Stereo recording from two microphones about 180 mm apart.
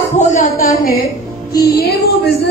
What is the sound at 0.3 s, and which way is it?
A woman's voice, 50° left (ahead or behind).